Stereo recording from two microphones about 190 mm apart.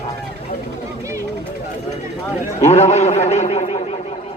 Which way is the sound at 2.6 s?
35° left (ahead or behind).